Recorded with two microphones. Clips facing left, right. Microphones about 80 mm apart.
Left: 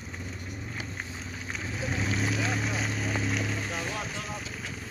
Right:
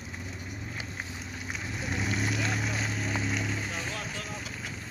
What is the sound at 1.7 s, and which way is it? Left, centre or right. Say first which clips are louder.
Boat: left 1 dB; centre.